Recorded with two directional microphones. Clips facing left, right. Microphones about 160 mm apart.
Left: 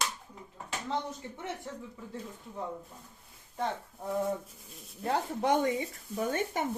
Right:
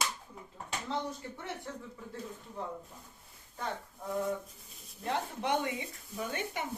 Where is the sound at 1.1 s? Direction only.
20° left (ahead or behind).